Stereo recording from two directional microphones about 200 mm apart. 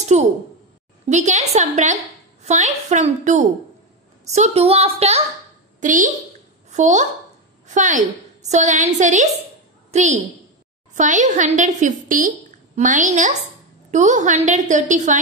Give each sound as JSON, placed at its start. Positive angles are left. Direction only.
{"t": 0.1, "sound": "a woman's voice", "side_deg": -35}
{"t": 5.8, "sound": "a woman's voice", "side_deg": -40}
{"t": 9.8, "sound": "a sound", "side_deg": -35}
{"t": 11.0, "sound": "a woman's voice", "side_deg": -40}